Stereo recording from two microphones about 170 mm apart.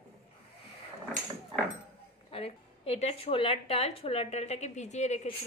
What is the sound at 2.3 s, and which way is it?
A woman's voice, 35° left (ahead or behind).